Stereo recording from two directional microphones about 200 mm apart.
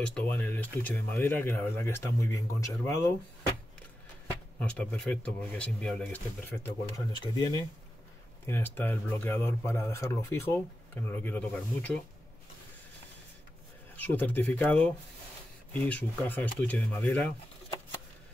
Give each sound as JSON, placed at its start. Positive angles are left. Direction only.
{"t": 0.0, "sound": "speech", "side_deg": 5}
{"t": 4.6, "sound": "speech", "side_deg": 5}
{"t": 7.2, "sound": "speech", "side_deg": 20}
{"t": 13.9, "sound": "speech", "side_deg": 10}